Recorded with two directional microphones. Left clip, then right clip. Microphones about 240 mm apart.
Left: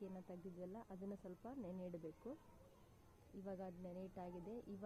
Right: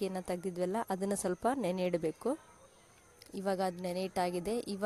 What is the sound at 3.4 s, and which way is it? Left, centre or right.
A woman's voice, right.